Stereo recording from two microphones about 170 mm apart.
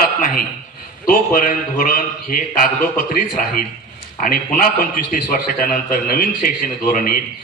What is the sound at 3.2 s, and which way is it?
A man's voice, 50° left (ahead or behind).